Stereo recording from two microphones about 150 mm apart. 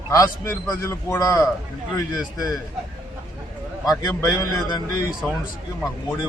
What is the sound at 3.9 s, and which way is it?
A man's voice, 25° left (ahead or behind).